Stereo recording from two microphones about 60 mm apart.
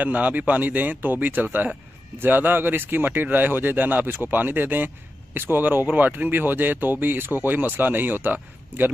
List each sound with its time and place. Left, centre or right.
0.0 s speech: right